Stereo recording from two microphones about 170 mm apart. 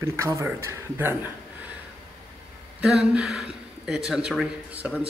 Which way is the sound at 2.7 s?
5° right (ahead or behind).